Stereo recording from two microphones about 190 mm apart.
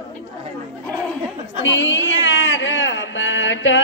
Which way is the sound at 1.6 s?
75° left (ahead or behind).